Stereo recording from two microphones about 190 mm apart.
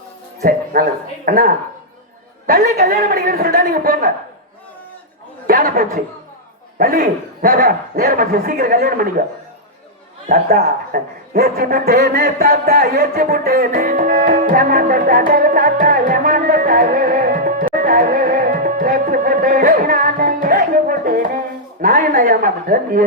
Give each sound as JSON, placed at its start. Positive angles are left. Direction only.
{"t": 0.4, "sound": "a man's voice", "side_deg": -50}
{"t": 5.5, "sound": "a man's voice", "side_deg": -50}
{"t": 10.2, "sound": "a man's voice", "side_deg": -55}
{"t": 15.3, "sound": "music", "side_deg": -45}
{"t": 21.8, "sound": "speech", "side_deg": -50}